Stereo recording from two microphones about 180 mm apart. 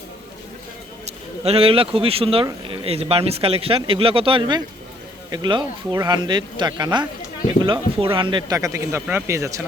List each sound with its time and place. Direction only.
1.0 s speech: 35° right (ahead or behind); by 9.6 s 15° right (ahead or behind)